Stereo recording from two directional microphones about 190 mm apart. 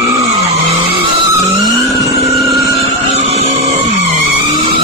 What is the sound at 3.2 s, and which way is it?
Vehicle, 35° right (ahead or behind).